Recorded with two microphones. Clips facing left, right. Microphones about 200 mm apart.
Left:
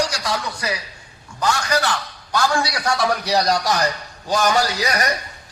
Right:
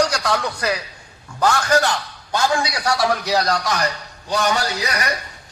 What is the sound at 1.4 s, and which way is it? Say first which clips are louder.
Speech: right 3 dB; 55° right (ahead or behind).